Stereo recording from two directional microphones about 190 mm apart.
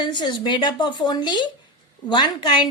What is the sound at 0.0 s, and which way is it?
A woman's voice, 25° left (ahead or behind).